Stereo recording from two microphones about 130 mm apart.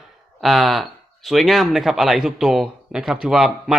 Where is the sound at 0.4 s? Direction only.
Centre (ahead or behind).